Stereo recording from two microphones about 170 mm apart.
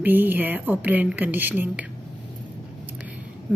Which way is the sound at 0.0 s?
10° right (ahead or behind).